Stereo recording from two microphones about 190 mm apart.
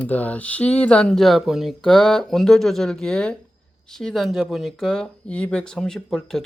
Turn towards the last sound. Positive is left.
turn(degrees=5)  # may be behind; listen again after turning